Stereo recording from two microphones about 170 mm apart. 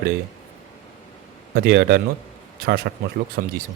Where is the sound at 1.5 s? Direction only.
65° right (ahead or behind).